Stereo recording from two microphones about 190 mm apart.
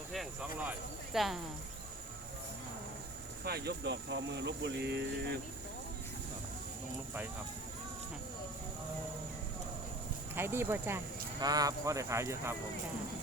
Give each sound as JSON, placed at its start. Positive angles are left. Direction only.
{"t": 0.1, "sound": "speech", "side_deg": -5}
{"t": 3.4, "sound": "speech", "side_deg": -55}
{"t": 10.3, "sound": "speech", "side_deg": -10}